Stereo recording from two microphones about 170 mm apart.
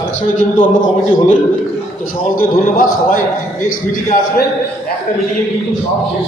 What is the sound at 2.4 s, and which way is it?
A man's voice, 55° left (ahead or behind).